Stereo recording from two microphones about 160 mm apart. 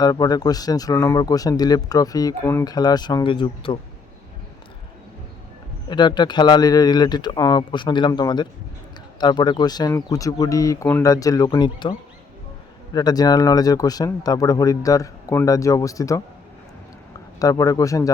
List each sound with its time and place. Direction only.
0.0 s speech: 25° left (ahead or behind)
5.9 s speech: 30° left (ahead or behind)
17.4 s speech: 20° left (ahead or behind)